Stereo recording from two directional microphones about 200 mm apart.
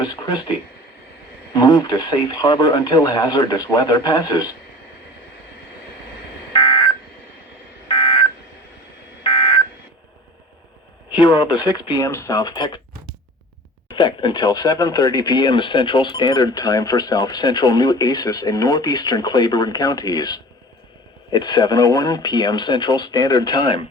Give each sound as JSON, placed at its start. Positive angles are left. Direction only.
{"t": 0.0, "sound": "speech", "side_deg": 20}
{"t": 1.5, "sound": "speech", "side_deg": 20}
{"t": 6.5, "sound": "telephone dialing", "side_deg": 20}
{"t": 11.1, "sound": "speech", "side_deg": 20}
{"t": 13.9, "sound": "speech", "side_deg": 25}